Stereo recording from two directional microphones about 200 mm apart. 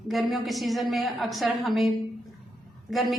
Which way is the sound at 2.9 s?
Centre (ahead or behind).